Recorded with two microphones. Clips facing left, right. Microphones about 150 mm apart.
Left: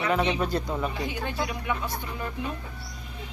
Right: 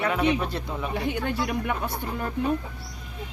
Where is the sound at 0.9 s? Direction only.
60° right (ahead or behind).